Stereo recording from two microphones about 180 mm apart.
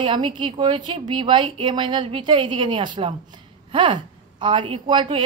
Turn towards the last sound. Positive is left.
turn(degrees=-25)  # may be behind; listen again after turning